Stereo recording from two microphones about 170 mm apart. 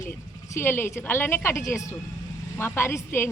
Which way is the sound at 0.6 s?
15° left (ahead or behind).